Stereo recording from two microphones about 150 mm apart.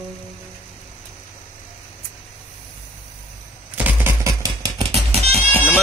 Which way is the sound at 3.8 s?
15° right (ahead or behind).